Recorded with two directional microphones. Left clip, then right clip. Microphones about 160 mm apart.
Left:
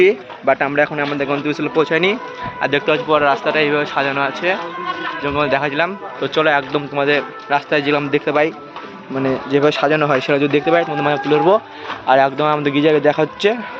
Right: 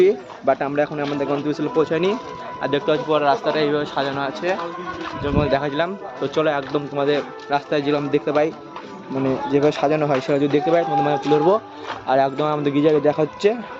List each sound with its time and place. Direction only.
0.0 s speech: 15° left (ahead or behind)
3.1 s speech: 25° left (ahead or behind)
5.4 s a man's voice: centre (ahead or behind)